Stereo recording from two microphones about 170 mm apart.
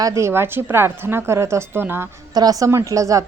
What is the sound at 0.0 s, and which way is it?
A woman's voice, 20° right (ahead or behind).